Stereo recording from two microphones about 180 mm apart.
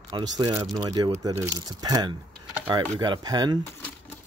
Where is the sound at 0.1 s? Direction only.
20° right (ahead or behind).